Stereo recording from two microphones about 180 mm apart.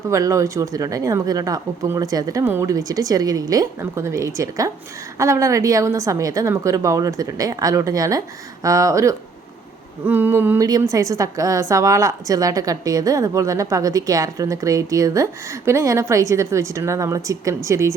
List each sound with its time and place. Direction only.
0.1 s a woman's voice: 20° right (ahead or behind)